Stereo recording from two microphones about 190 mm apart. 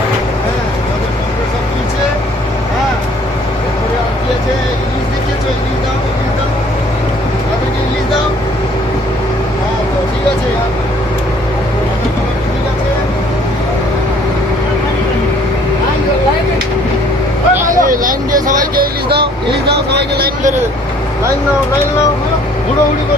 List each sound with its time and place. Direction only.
17.7 s vehicle: 45° right (ahead or behind)
19.7 s vehicle: 60° right (ahead or behind)